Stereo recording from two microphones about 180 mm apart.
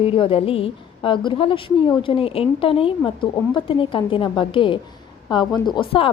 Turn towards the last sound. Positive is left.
turn(degrees=30)  # may be behind; listen again after turning